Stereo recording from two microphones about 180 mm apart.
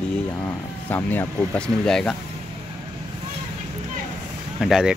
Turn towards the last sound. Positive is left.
turn(degrees=0)  # may be behind; listen again after turning